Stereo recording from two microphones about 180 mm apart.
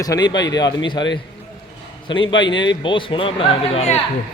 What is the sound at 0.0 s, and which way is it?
Speech, 20° left (ahead or behind).